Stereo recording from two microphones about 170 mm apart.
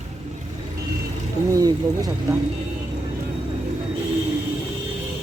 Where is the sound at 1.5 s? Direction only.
20° right (ahead or behind).